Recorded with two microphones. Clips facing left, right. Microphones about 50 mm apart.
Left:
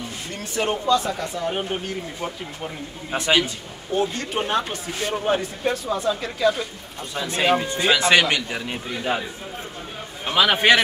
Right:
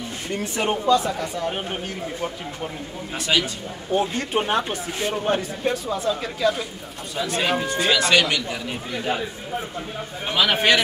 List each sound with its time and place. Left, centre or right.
0.6 s speech: centre
3.1 s a man's voice: left
4.2 s speech: centre
5.1 s speech: centre
10.3 s speech: centre